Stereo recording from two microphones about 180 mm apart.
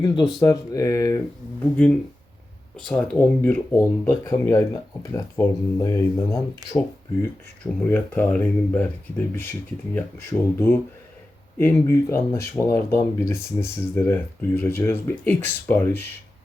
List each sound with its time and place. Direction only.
0.3 s speech: 20° left (ahead or behind)
2.7 s speech: centre (ahead or behind)